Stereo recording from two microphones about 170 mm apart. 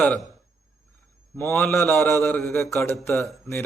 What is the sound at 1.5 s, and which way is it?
A man's voice, centre (ahead or behind).